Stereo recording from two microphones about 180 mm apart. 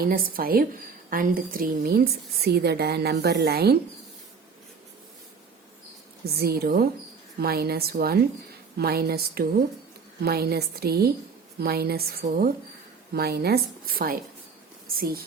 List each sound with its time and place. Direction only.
0.0 s a woman's voice: 50° right (ahead or behind)
6.4 s a woman's voice: 60° right (ahead or behind)